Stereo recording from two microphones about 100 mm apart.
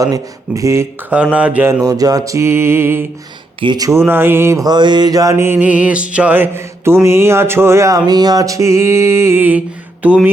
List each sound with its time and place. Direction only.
0.0 s mantra: 35° right (ahead or behind)
1.1 s speech: 10° right (ahead or behind)
1.8 s mantra: 40° right (ahead or behind); by 3.0 s 20° right (ahead or behind)
3.6 s speech: 55° right (ahead or behind)
3.9 s mantra: 20° right (ahead or behind)
4.6 s mantra: 45° right (ahead or behind); by 5.5 s 30° right (ahead or behind)
5.5 s mantra: 15° right (ahead or behind)